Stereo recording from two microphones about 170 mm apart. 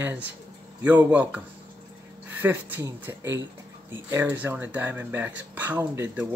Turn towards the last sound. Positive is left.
turn(degrees=-10)  # may be behind; listen again after turning